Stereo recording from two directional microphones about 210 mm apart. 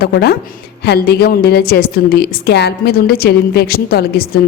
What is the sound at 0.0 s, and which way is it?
A woman's voice, 50° left (ahead or behind).